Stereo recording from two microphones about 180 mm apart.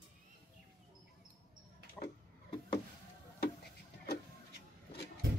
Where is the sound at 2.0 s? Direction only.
5° left (ahead or behind).